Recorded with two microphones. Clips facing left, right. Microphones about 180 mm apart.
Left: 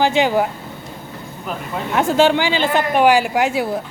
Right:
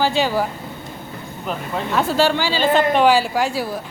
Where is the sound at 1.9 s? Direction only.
20° left (ahead or behind).